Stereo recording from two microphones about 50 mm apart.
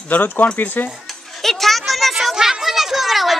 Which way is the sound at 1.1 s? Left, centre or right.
Centre.